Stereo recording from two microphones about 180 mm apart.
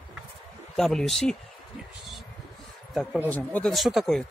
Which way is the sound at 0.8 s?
Centre (ahead or behind).